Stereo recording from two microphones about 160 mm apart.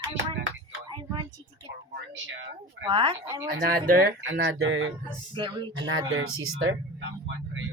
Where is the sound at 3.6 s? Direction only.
70° right (ahead or behind).